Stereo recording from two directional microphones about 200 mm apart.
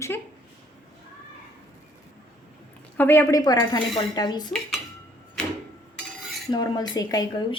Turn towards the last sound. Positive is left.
turn(degrees=20)  # may be behind; listen again after turning